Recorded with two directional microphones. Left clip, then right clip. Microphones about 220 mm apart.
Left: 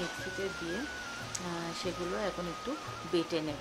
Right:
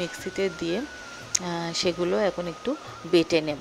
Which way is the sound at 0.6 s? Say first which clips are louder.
Right 7 dB; 25° right (ahead or behind).